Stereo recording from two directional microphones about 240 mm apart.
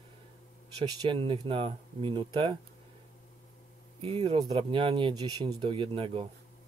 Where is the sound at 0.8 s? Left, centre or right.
Centre.